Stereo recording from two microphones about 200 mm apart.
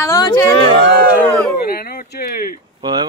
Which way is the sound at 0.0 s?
20° left (ahead or behind).